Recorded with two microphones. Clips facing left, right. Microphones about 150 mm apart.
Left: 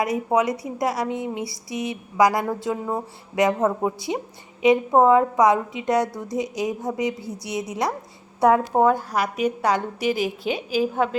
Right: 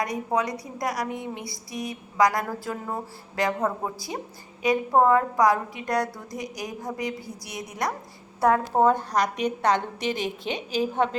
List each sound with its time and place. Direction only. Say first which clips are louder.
0.0 s a woman's voice: left 5 dB; 25° left (ahead or behind)
8.9 s a woman's voice: left 1 dB; 5° left (ahead or behind)